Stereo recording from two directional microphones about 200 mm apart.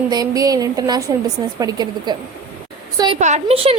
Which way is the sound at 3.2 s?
35° right (ahead or behind).